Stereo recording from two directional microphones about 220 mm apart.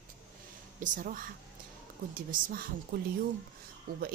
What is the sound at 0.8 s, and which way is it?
A woman's voice, 35° right (ahead or behind).